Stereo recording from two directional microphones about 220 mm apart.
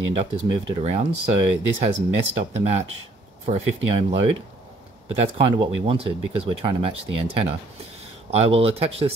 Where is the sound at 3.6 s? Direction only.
60° right (ahead or behind).